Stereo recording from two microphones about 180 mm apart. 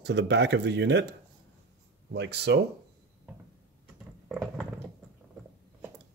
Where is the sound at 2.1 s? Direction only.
70° right (ahead or behind).